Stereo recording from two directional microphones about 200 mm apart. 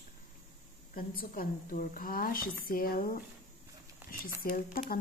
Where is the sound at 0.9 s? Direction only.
45° left (ahead or behind).